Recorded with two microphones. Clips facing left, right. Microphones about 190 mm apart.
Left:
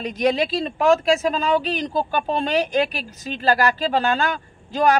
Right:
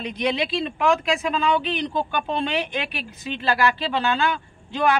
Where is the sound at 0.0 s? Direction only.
45° left (ahead or behind).